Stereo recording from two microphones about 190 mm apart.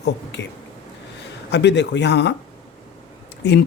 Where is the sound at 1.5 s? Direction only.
65° left (ahead or behind).